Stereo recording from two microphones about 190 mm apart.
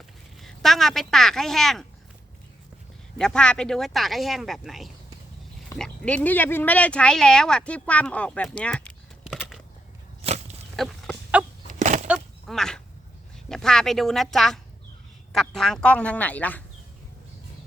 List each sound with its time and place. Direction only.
0.3 s speech: centre (ahead or behind)
3.2 s speech: 5° left (ahead or behind)
10.2 s a sound: 35° right (ahead or behind)
10.8 s chicken: centre (ahead or behind)
11.7 s bird flight: 40° right (ahead or behind)
12.0 s a sound: centre (ahead or behind)
13.5 s speech: 5° left (ahead or behind)